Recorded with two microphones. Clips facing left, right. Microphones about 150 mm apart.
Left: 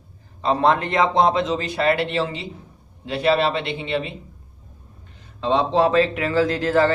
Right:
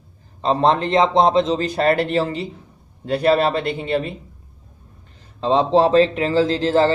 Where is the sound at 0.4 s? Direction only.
35° right (ahead or behind).